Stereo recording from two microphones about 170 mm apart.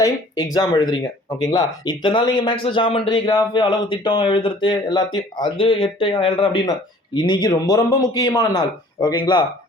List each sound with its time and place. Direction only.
0.5 s speech: 25° left (ahead or behind)